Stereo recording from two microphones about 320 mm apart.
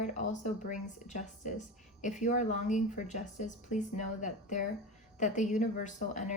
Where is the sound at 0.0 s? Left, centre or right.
Left.